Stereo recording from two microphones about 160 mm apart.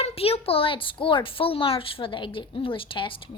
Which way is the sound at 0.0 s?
40° left (ahead or behind).